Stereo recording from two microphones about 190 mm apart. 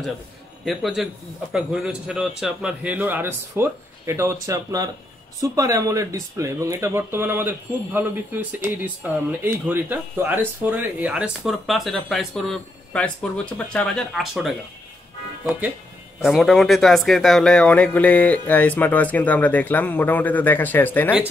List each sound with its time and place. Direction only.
0.7 s speech: centre (ahead or behind)
16.2 s speech: centre (ahead or behind)